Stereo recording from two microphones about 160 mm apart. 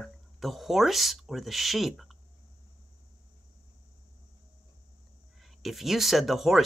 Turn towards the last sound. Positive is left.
turn(degrees=0)  # may be behind; listen again after turning